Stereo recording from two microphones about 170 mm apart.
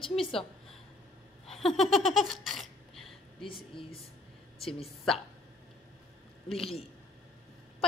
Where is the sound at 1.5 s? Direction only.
Centre (ahead or behind).